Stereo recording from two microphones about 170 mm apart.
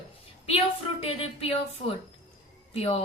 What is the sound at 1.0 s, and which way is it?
Speech, 35° left (ahead or behind).